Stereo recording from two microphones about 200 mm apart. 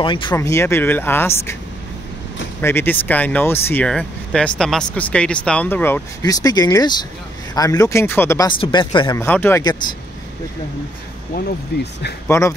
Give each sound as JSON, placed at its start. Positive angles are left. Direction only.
{"t": 0.0, "sound": "speech", "side_deg": 25}
{"t": 2.6, "sound": "speech", "side_deg": 10}
{"t": 9.2, "sound": "speech", "side_deg": 10}
{"t": 11.3, "sound": "speech", "side_deg": 55}
{"t": 12.3, "sound": "speech", "side_deg": 15}